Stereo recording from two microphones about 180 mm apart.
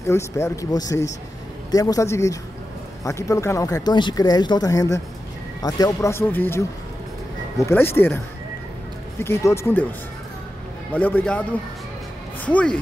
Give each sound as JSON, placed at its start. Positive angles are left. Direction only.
{"t": 0.0, "sound": "speech", "side_deg": 15}
{"t": 9.2, "sound": "speech", "side_deg": 15}
{"t": 10.9, "sound": "speech", "side_deg": 10}
{"t": 12.4, "sound": "speech", "side_deg": 5}